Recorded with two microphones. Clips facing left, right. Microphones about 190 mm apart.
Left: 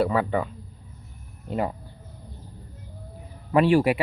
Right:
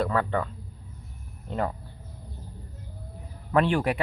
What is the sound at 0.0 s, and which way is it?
Speech, 10° left (ahead or behind).